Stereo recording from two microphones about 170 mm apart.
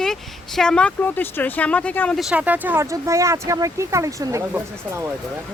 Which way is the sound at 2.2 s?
5° right (ahead or behind).